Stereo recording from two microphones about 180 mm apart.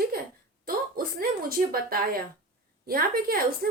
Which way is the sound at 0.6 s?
55° right (ahead or behind).